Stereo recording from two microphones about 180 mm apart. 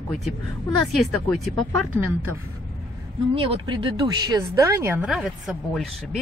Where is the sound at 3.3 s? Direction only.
30° right (ahead or behind); by 5.8 s centre (ahead or behind).